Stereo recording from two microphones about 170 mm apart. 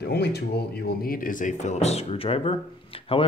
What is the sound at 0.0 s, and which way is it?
Speech, 75° left (ahead or behind).